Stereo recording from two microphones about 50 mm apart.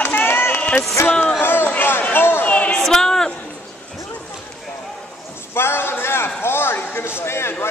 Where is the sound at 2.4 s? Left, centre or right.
Left.